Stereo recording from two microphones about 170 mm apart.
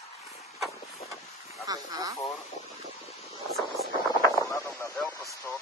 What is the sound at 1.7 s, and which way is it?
Speech, 20° right (ahead or behind).